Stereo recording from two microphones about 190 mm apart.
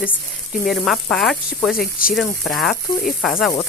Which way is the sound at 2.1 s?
Centre (ahead or behind).